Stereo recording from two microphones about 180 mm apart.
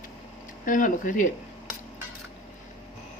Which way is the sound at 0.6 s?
45° left (ahead or behind).